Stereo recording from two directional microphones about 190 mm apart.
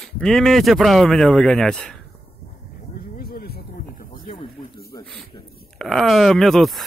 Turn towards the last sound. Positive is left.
turn(degrees=0)  # may be behind; listen again after turning